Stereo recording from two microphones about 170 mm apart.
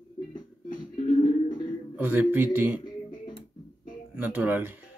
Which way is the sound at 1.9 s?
10° right (ahead or behind).